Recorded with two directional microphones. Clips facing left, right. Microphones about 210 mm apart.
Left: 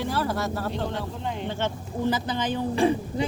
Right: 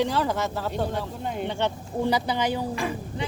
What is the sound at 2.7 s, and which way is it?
Speech, 30° left (ahead or behind).